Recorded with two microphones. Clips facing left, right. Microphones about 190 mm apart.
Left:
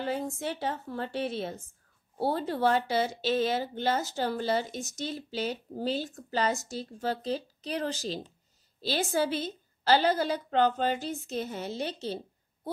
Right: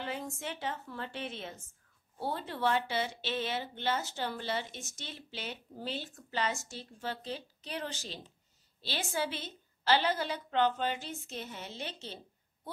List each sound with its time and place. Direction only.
0.0 s speech: 35° left (ahead or behind)